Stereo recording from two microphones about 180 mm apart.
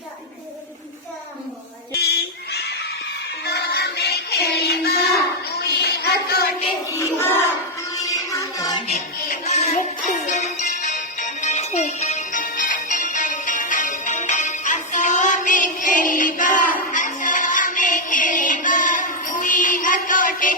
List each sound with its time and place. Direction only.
2.0 s goose: 60° left (ahead or behind)
3.4 s music: 65° left (ahead or behind)
5.6 s a sound: 65° left (ahead or behind)
6.9 s child singing: 15° left (ahead or behind)
7.9 s music: 20° left (ahead or behind)
8.9 s music: 40° left (ahead or behind)